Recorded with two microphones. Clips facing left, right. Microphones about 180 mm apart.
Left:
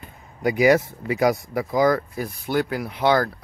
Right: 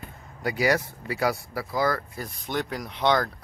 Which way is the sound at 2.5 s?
5° left (ahead or behind).